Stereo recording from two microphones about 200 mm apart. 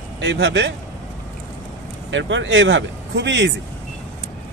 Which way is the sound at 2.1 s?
70° right (ahead or behind).